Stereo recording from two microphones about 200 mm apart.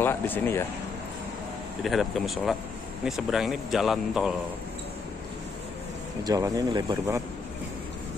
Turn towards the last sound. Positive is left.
turn(degrees=-20)  # may be behind; listen again after turning